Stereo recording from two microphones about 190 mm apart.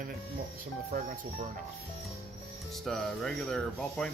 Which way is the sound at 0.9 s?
45° right (ahead or behind).